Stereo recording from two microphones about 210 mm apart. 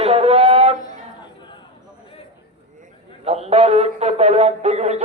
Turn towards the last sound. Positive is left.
turn(degrees=-30)  # may be behind; listen again after turning